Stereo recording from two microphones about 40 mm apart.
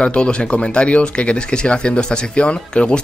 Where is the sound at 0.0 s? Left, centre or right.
Left.